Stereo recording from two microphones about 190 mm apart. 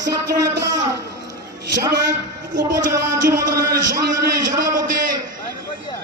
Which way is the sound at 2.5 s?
40° right (ahead or behind).